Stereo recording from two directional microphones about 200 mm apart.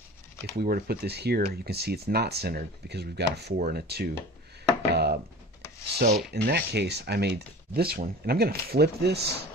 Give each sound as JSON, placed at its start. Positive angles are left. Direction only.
{"t": 0.4, "sound": "speech", "side_deg": -50}